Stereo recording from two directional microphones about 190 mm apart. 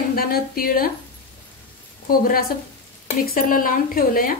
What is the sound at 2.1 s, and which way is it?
Speech, 50° left (ahead or behind).